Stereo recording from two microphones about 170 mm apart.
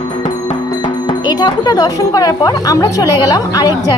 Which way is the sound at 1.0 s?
25° left (ahead or behind).